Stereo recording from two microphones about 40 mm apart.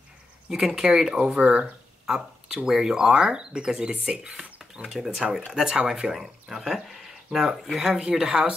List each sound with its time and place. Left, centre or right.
0.5 s speech: centre
4.8 s speech: centre
6.1 s speech: centre
7.3 s speech: right
7.8 s speech: centre